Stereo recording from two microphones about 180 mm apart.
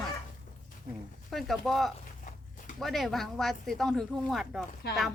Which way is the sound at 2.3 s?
45° left (ahead or behind).